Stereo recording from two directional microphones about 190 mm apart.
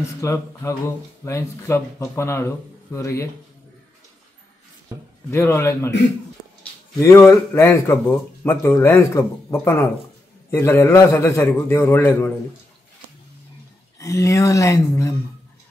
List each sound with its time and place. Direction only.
0.2 s speech: 15° left (ahead or behind)
5.3 s speech: 15° left (ahead or behind)
7.0 s speech: 15° left (ahead or behind)
13.9 s speech: 15° left (ahead or behind)